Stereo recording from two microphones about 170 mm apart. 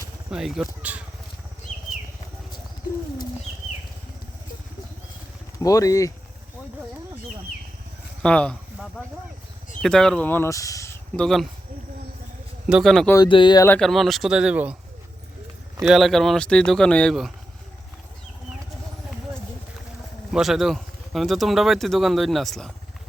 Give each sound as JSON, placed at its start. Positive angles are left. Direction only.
{"t": 0.3, "sound": "speech", "side_deg": -5}
{"t": 5.6, "sound": "speech", "side_deg": 20}
{"t": 8.2, "sound": "speech", "side_deg": 5}
{"t": 11.2, "sound": "speech", "side_deg": 0}
{"t": 12.6, "sound": "speech", "side_deg": 0}
{"t": 13.1, "sound": "speech", "side_deg": 30}
{"t": 13.7, "sound": "speech", "side_deg": 0}
{"t": 15.8, "sound": "speech", "side_deg": 0}
{"t": 20.3, "sound": "speech", "side_deg": 0}